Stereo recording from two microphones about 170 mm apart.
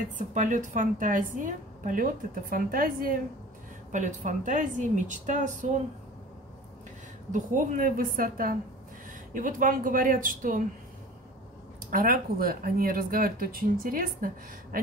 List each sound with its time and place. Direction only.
0.3 s a woman's voice: 45° right (ahead or behind)
7.2 s a woman's voice: 50° right (ahead or behind)
11.9 s speech: 55° right (ahead or behind)